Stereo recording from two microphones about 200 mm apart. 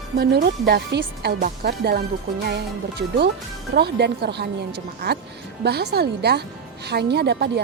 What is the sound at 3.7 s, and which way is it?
Speech, 55° right (ahead or behind).